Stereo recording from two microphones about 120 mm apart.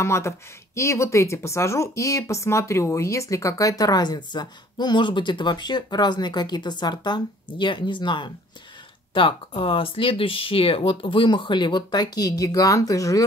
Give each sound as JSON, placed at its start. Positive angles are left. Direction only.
{"t": 0.0, "sound": "speech", "side_deg": 20}